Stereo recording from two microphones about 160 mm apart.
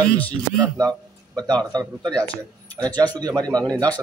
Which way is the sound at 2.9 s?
10° left (ahead or behind).